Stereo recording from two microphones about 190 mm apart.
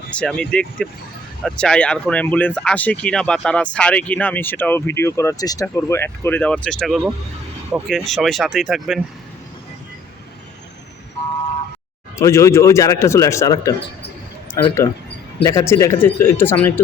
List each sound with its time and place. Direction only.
0.2 s speech: 5° left (ahead or behind)
12.1 s speech: 15° left (ahead or behind)